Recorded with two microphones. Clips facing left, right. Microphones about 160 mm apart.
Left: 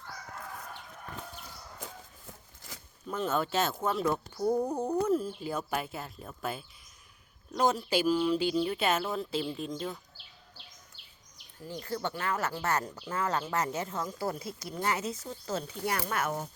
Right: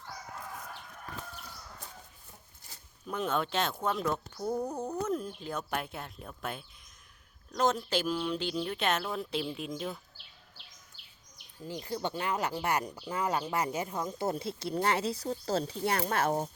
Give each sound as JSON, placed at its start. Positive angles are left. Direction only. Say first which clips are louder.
{"t": 1.8, "sound": "a sound", "louder": "left 5 dB", "side_deg": 90}
{"t": 3.1, "sound": "speech", "louder": "left 1 dB", "side_deg": 0}
{"t": 11.6, "sound": "speech", "louder": "even", "side_deg": -15}